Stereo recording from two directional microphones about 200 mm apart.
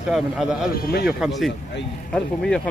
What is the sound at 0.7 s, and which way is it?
Speech, 50° left (ahead or behind).